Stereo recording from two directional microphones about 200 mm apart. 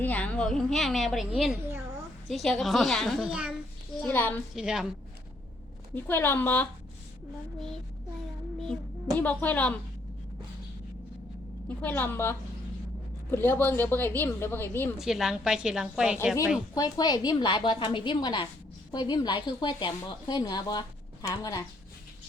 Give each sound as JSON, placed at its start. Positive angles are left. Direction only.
{"t": 0.0, "sound": "a woman's voice", "side_deg": 10}
{"t": 4.0, "sound": "speech", "side_deg": 10}
{"t": 4.5, "sound": "a woman's voice", "side_deg": -5}
{"t": 5.9, "sound": "speech", "side_deg": 10}
{"t": 9.1, "sound": "speech", "side_deg": 10}
{"t": 11.8, "sound": "speech", "side_deg": 10}
{"t": 14.9, "sound": "a woman's voice", "side_deg": 0}
{"t": 16.7, "sound": "speech", "side_deg": 20}